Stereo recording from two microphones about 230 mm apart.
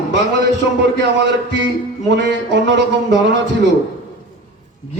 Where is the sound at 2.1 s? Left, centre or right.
Right.